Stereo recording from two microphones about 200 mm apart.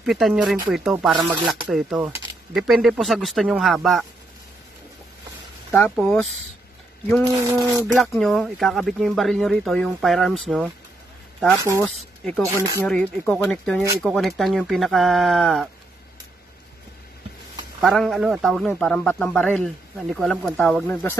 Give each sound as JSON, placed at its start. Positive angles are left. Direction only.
{"t": 0.0, "sound": "a man's voice", "side_deg": 0}
{"t": 5.7, "sound": "a man's voice", "side_deg": 5}
{"t": 7.2, "sound": "speech", "side_deg": -15}
{"t": 8.0, "sound": "a man's voice", "side_deg": 0}
{"t": 11.8, "sound": "a man's voice", "side_deg": 5}
{"t": 12.4, "sound": "speech", "side_deg": -15}
{"t": 12.8, "sound": "a man's voice", "side_deg": 5}
{"t": 17.7, "sound": "a man's voice", "side_deg": 0}